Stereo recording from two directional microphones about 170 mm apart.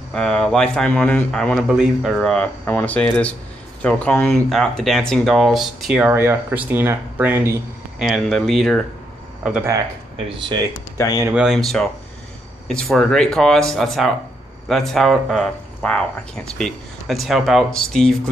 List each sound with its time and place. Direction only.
0.1 s speech: 5° left (ahead or behind)
10.1 s speech: 30° right (ahead or behind)
11.2 s speech: 5° right (ahead or behind)